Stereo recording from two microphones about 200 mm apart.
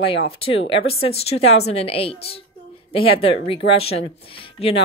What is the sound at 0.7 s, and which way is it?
Speech, 30° left (ahead or behind).